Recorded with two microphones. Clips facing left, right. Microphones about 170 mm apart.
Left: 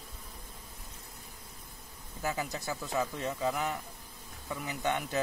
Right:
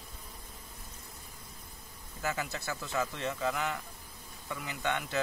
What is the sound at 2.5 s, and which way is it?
Speech, 15° left (ahead or behind).